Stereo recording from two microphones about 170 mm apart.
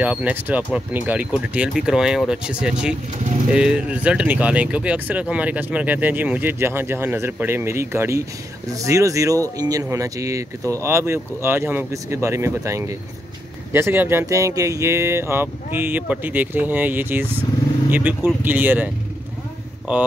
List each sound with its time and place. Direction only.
0.0 s speech: 10° right (ahead or behind)